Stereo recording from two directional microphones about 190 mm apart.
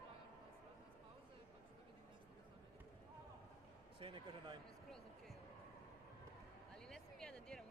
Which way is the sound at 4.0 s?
25° right (ahead or behind).